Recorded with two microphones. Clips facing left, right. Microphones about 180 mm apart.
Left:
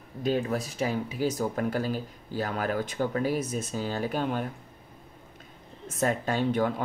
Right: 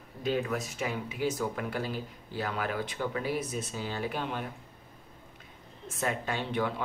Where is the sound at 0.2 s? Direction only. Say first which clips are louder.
Left 3 dB; 35° left (ahead or behind).